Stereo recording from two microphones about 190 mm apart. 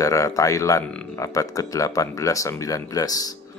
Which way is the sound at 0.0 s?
15° left (ahead or behind).